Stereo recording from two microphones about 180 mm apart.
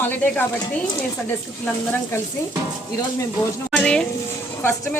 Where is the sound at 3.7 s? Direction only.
5° left (ahead or behind).